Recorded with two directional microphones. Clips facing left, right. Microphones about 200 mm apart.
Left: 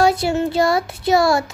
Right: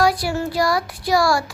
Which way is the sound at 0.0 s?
25° left (ahead or behind).